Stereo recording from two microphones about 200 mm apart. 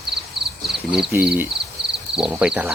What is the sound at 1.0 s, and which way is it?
Speech, 5° right (ahead or behind).